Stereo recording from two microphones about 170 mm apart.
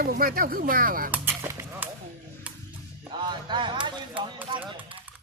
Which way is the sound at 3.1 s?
25° right (ahead or behind).